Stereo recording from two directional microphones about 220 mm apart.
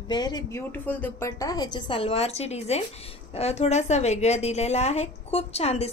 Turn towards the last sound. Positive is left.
turn(degrees=30)  # may be behind; listen again after turning